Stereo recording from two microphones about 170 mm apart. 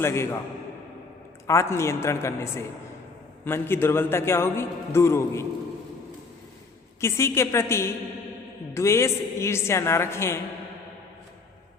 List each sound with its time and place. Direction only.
0.0 s a man's voice: 15° left (ahead or behind)
1.5 s a man's voice: 15° left (ahead or behind)
7.0 s a man's voice: 15° left (ahead or behind)